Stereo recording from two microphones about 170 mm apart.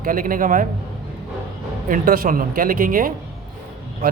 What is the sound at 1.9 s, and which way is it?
Speech, 55° right (ahead or behind).